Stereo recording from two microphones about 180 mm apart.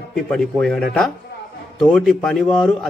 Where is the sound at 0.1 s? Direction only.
5° left (ahead or behind).